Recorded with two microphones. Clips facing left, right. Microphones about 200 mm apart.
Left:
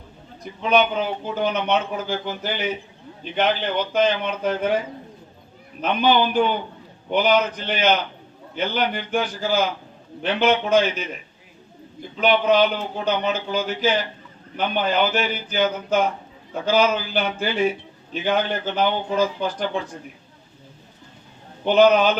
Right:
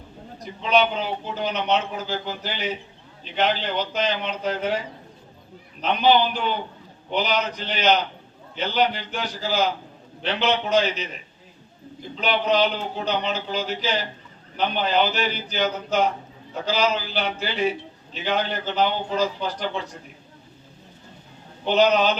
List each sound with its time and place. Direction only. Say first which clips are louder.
0.6 s a man's voice: left 2 dB; 50° left (ahead or behind)
5.8 s a man's voice: even; 50° left (ahead or behind)
12.2 s a man's voice: left 4 dB; 55° left (ahead or behind)
21.7 s a man's voice: left 4 dB; 50° left (ahead or behind)